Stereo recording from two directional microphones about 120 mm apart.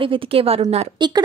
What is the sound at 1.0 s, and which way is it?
Speech, 40° right (ahead or behind).